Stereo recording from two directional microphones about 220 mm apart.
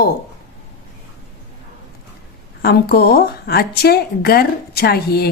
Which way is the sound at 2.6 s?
45° left (ahead or behind).